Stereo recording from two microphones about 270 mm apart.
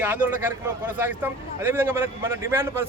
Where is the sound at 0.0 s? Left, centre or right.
Centre.